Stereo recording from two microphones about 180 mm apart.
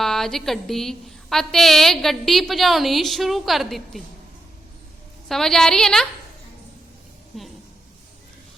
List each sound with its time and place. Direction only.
0.0 s a woman's voice: centre (ahead or behind)
5.3 s a woman's voice: centre (ahead or behind)
7.3 s a sound: centre (ahead or behind)